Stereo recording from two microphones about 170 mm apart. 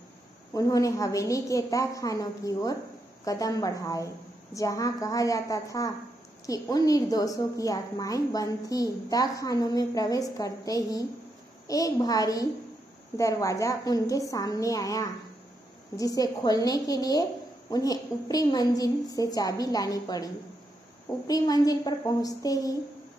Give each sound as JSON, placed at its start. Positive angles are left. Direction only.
{"t": 0.5, "sound": "a woman's voice", "side_deg": 20}
{"t": 21.3, "sound": "a woman's voice", "side_deg": 20}